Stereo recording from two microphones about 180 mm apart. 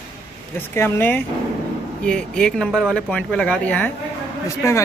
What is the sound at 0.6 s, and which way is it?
Speech, 15° left (ahead or behind).